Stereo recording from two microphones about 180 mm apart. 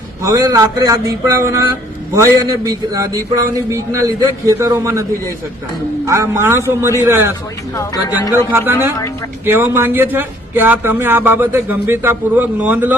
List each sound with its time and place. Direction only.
0.2 s speech: 20° right (ahead or behind)
6.1 s speech: 15° right (ahead or behind)
8.5 s speech: 10° right (ahead or behind)